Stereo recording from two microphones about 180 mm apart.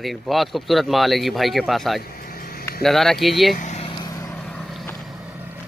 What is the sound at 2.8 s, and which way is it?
Speech, centre (ahead or behind).